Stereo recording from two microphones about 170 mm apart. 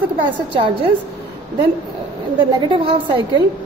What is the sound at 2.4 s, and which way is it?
A woman's voice, 30° right (ahead or behind).